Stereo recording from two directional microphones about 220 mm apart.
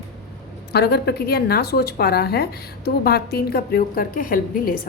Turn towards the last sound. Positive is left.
turn(degrees=40)  # may be behind; listen again after turning